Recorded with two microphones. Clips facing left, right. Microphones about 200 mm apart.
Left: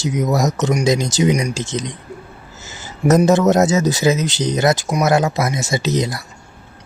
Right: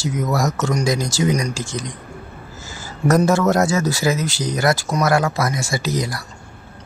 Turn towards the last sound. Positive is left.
turn(degrees=20)  # may be behind; listen again after turning